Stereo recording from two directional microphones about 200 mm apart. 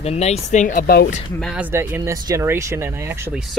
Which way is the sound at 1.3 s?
Centre (ahead or behind).